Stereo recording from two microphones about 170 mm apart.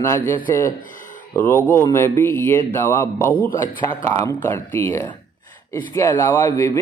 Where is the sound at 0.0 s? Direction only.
15° left (ahead or behind).